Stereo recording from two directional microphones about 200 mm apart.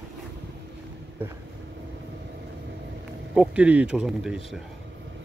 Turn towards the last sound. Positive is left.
turn(degrees=0)  # may be behind; listen again after turning